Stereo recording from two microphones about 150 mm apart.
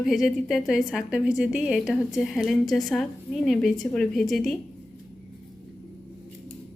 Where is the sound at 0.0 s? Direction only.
Centre (ahead or behind).